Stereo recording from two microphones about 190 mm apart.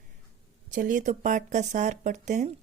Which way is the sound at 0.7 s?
45° right (ahead or behind).